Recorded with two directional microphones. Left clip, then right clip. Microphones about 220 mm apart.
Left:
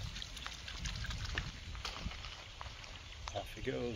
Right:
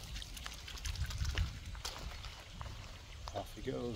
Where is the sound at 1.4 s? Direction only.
45° right (ahead or behind).